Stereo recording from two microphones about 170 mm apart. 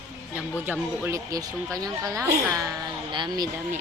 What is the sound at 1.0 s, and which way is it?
Speech, 20° right (ahead or behind).